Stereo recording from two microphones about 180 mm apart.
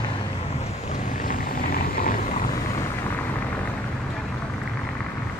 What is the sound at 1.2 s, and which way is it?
Vehicle, 50° left (ahead or behind).